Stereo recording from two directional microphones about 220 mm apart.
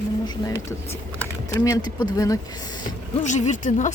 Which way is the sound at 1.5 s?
15° left (ahead or behind).